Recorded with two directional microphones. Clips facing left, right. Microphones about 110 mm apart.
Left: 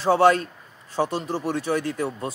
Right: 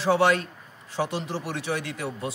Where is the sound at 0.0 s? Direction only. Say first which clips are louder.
Left 4 dB; 45° left (ahead or behind).